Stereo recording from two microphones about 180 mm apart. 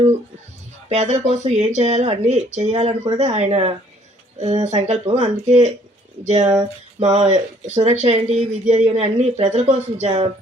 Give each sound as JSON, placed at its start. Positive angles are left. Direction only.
{"t": 0.9, "sound": "speech", "side_deg": -40}